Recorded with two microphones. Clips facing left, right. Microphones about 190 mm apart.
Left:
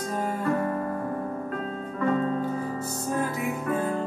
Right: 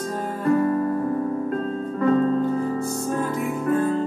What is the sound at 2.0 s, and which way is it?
Music, 35° right (ahead or behind).